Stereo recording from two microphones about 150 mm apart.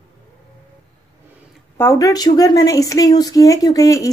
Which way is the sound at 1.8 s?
20° left (ahead or behind).